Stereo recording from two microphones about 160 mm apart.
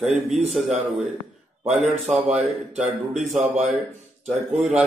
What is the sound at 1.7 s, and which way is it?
Speech, centre (ahead or behind).